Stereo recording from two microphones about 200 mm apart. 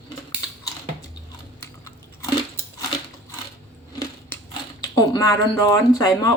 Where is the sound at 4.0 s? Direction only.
15° left (ahead or behind).